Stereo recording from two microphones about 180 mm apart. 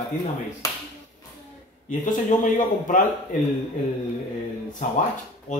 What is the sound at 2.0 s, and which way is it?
Speech, 45° left (ahead or behind).